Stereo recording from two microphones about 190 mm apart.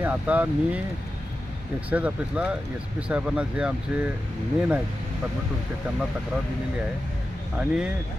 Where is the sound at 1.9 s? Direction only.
5° right (ahead or behind).